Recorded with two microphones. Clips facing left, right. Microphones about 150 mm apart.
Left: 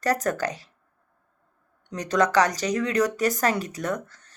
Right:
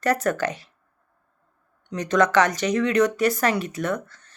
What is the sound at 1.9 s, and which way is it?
Speech, 35° left (ahead or behind).